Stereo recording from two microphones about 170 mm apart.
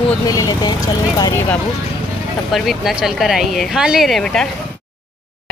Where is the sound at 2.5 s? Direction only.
Centre (ahead or behind).